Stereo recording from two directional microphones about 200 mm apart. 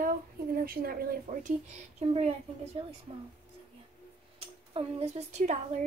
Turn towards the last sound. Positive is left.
turn(degrees=-35)  # may be behind; listen again after turning